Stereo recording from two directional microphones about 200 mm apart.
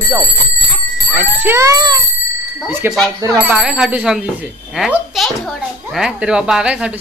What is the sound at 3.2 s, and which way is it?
Speech, 15° right (ahead or behind).